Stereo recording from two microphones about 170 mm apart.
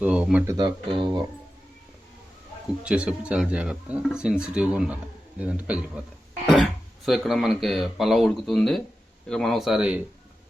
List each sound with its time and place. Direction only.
0.0 s speech: 5° right (ahead or behind)
0.4 s speech: 25° right (ahead or behind)
2.8 s speech: 5° right (ahead or behind)